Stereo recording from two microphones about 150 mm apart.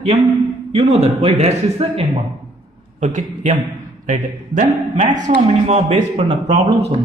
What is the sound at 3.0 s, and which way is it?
A man's voice, 55° right (ahead or behind).